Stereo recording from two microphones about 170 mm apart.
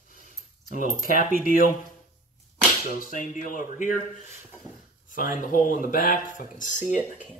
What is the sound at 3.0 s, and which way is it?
Speech, 50° left (ahead or behind).